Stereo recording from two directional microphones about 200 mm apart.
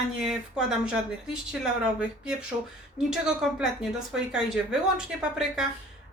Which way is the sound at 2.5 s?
25° right (ahead or behind).